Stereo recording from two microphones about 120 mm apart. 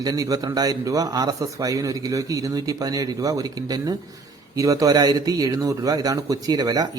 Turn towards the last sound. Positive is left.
turn(degrees=-30)  # may be behind; listen again after turning